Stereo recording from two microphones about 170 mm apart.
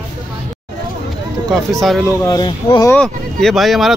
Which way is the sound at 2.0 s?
20° left (ahead or behind).